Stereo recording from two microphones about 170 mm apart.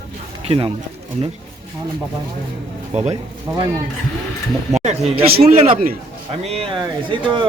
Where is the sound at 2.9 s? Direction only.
40° right (ahead or behind).